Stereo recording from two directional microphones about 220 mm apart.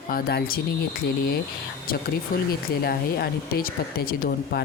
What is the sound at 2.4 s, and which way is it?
Speech, 45° left (ahead or behind).